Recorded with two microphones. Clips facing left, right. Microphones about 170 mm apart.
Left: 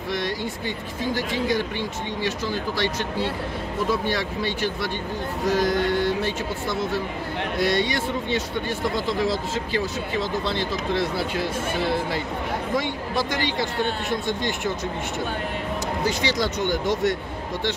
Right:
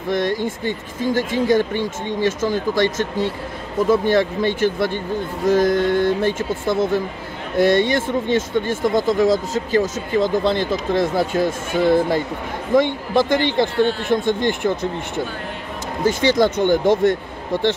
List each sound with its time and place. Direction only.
0.1 s speech: 50° right (ahead or behind)
16.0 s speech: 50° right (ahead or behind)